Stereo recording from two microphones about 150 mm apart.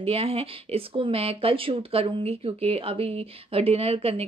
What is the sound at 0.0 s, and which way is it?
Speech, 40° right (ahead or behind).